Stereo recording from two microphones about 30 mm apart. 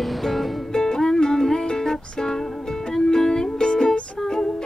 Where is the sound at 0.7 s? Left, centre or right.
Left.